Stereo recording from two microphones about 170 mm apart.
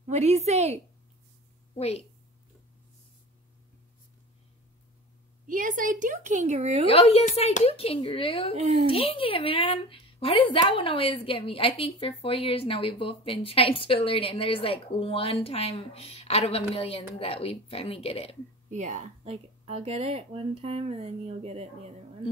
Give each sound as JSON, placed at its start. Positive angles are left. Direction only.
{"t": 0.0, "sound": "a woman's voice", "side_deg": -40}
{"t": 1.8, "sound": "a woman's voice", "side_deg": 35}
{"t": 5.5, "sound": "a woman's voice", "side_deg": -50}
{"t": 6.9, "sound": "a woman's voice", "side_deg": 35}
{"t": 18.7, "sound": "speech", "side_deg": -45}